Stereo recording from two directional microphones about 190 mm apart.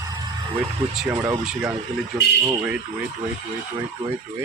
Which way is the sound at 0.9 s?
10° right (ahead or behind).